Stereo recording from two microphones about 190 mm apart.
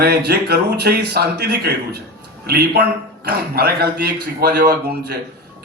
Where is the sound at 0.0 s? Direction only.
60° right (ahead or behind).